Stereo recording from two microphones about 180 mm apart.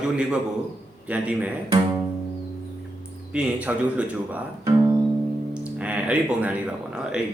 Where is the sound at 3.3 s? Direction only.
5° right (ahead or behind).